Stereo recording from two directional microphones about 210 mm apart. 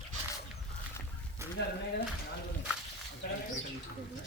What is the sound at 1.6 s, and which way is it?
Speech, 55° left (ahead or behind).